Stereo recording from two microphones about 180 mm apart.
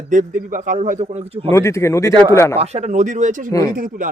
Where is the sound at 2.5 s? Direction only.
35° right (ahead or behind).